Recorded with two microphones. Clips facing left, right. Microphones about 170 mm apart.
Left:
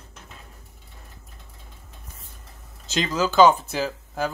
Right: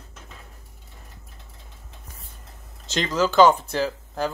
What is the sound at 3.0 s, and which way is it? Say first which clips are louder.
Speech: even; 10° left (ahead or behind).